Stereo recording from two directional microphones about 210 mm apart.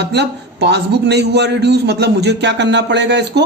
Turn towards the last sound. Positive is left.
turn(degrees=-55)  # may be behind; listen again after turning